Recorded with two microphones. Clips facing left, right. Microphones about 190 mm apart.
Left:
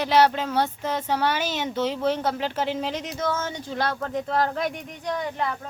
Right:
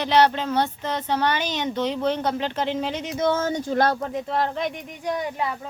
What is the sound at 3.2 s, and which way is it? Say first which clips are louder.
Speech: right 7 dB; 30° right (ahead or behind).